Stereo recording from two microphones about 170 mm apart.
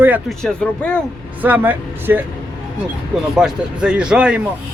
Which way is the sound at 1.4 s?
10° right (ahead or behind).